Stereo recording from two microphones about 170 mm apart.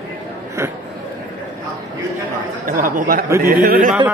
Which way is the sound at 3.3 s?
15° right (ahead or behind).